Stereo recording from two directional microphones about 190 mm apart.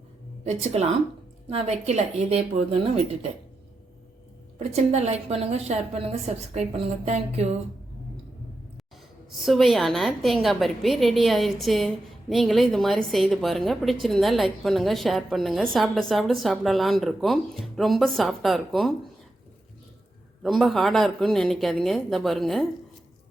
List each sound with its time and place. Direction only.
0.4 s a woman's voice: 35° right (ahead or behind)
4.7 s a woman's voice: 35° right (ahead or behind)
9.3 s a woman's voice: centre (ahead or behind)
20.4 s a woman's voice: centre (ahead or behind)